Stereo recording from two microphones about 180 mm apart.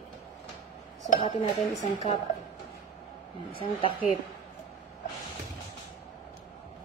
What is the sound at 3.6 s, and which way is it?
Speech, 30° left (ahead or behind).